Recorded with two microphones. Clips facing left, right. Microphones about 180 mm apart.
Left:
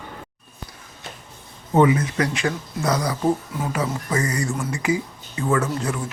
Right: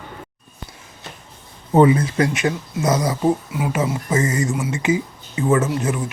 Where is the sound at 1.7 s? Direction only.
30° right (ahead or behind).